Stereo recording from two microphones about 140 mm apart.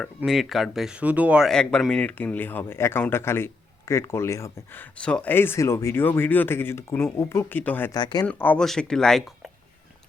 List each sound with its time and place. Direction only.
0.3 s speech: centre (ahead or behind)
1.5 s speech: 5° left (ahead or behind)
7.9 s speech: 30° left (ahead or behind)
8.3 s speech: 10° left (ahead or behind)